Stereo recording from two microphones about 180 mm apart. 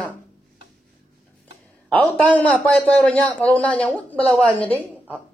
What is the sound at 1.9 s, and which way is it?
A woman's voice, 5° left (ahead or behind).